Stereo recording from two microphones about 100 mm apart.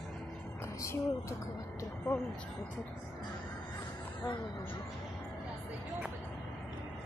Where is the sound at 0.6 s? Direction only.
30° left (ahead or behind).